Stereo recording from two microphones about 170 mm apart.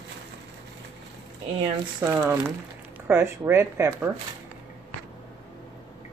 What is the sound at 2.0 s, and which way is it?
Speech, 15° right (ahead or behind).